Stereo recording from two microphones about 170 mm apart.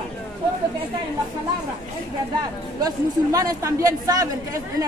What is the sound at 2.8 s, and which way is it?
A man's voice, 20° right (ahead or behind).